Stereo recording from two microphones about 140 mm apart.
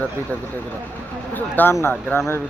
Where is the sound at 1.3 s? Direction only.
15° left (ahead or behind).